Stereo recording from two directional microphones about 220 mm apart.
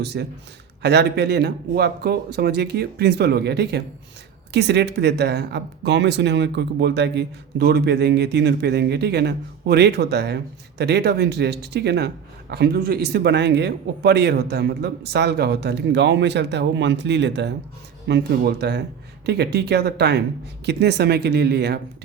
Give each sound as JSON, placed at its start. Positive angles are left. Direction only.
{"t": 0.0, "sound": "speech", "side_deg": -50}